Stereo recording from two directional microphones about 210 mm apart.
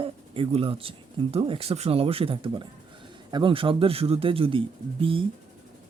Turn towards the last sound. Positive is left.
turn(degrees=-25)  # may be behind; listen again after turning